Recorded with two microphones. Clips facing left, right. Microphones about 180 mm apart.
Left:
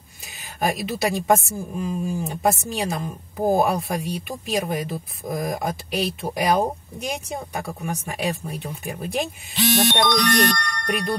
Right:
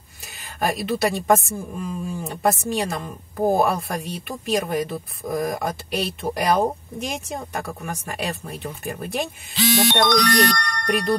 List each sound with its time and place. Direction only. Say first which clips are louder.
0.6 s speech: right 1 dB; centre (ahead or behind)
9.9 s speech: right 1 dB; 45° right (ahead or behind)